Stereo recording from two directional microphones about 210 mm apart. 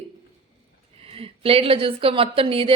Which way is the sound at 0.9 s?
30° right (ahead or behind).